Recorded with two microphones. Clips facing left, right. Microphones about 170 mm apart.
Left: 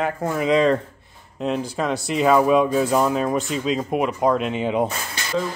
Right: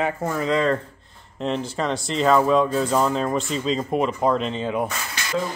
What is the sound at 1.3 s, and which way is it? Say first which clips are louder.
Speech: left 1 dB; 5° left (ahead or behind).